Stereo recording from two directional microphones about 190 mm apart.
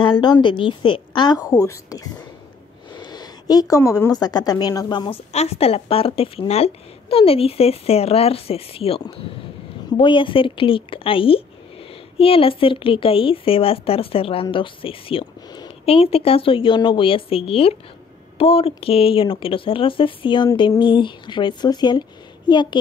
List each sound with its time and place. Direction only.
0.0 s a woman's voice: 25° left (ahead or behind)
5.3 s a woman's voice: 35° left (ahead or behind)